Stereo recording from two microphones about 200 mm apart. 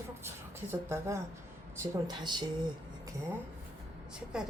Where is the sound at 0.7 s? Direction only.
15° right (ahead or behind).